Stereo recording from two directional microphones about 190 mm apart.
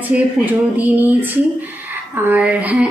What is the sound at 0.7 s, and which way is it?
Speech, 10° right (ahead or behind).